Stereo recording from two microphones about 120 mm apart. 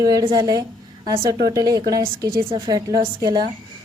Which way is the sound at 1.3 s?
30° right (ahead or behind).